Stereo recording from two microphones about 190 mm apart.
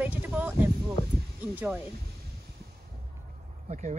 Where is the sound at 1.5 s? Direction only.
10° right (ahead or behind).